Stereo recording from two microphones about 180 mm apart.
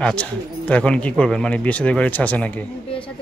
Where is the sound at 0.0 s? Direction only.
5° left (ahead or behind).